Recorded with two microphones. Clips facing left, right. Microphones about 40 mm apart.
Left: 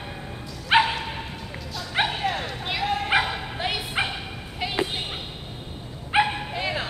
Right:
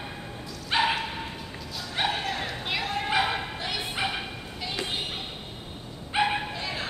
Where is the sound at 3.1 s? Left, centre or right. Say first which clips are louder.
Left 2 dB; left.